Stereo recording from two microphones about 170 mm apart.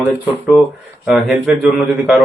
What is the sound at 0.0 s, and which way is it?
Speech, 10° right (ahead or behind).